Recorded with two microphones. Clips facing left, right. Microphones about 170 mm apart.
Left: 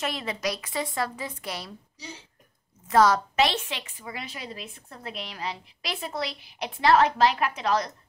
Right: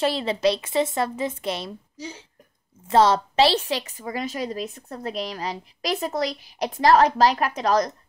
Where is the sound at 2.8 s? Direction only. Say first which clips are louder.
Right 2 dB; 30° right (ahead or behind).